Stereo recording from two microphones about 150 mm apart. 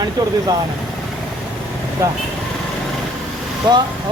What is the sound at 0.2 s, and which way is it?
Speech, 25° right (ahead or behind).